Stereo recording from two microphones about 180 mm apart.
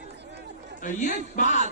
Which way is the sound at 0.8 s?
45° left (ahead or behind).